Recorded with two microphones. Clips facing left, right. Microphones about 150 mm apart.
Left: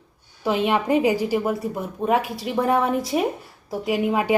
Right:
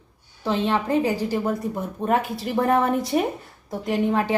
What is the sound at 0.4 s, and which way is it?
A woman's voice, 10° left (ahead or behind).